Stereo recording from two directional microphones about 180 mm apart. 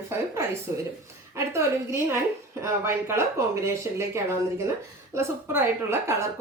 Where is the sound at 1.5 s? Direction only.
15° right (ahead or behind).